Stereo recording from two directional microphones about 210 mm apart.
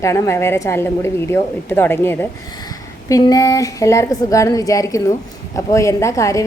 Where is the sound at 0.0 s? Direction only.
15° left (ahead or behind).